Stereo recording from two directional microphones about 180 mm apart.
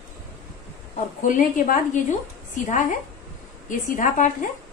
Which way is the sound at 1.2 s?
45° left (ahead or behind).